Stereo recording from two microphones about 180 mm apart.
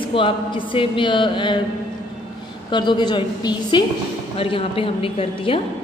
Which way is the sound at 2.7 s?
25° left (ahead or behind).